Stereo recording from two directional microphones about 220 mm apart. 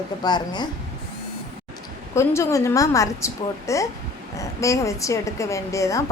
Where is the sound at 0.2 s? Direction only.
20° left (ahead or behind).